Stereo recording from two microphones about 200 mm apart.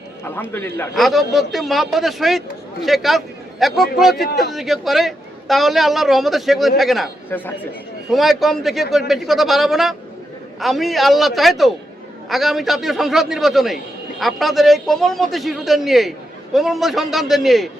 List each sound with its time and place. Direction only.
0.5 s a man's voice: 10° left (ahead or behind)
0.9 s a man's voice: centre (ahead or behind)
7.3 s speech: 10° left (ahead or behind)
8.1 s a man's voice: centre (ahead or behind)